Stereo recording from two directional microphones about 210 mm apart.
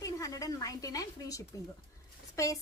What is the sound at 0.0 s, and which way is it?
Speech, 15° left (ahead or behind).